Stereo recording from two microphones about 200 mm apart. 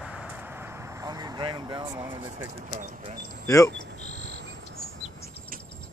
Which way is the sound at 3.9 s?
90° left.